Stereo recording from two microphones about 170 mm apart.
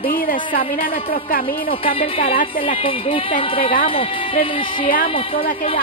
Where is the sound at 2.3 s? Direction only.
55° left (ahead or behind).